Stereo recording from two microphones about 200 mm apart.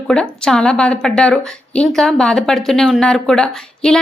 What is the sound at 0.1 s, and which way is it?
A woman's voice, 5° left (ahead or behind).